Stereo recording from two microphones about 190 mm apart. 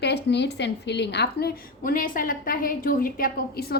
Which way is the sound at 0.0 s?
65° left (ahead or behind).